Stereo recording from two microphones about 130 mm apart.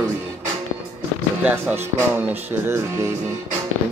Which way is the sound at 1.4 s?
10° right (ahead or behind).